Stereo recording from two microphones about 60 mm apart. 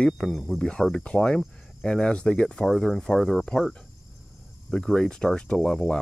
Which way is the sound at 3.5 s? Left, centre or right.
Centre.